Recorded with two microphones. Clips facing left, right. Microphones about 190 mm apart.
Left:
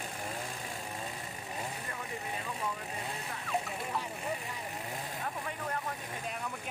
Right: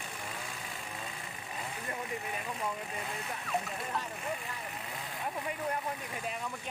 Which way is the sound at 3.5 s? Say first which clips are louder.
Left 1 dB; centre (ahead or behind).